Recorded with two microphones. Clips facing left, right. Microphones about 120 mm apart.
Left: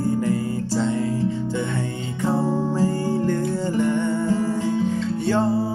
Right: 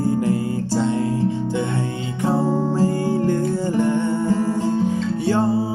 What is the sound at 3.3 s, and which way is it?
Music, 25° right (ahead or behind).